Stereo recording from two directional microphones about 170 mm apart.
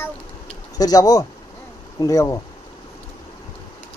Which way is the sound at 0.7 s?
20° left (ahead or behind).